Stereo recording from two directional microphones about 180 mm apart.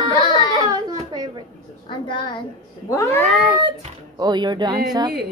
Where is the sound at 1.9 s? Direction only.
25° left (ahead or behind).